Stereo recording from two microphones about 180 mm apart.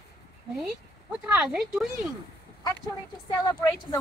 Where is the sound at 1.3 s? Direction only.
5° right (ahead or behind).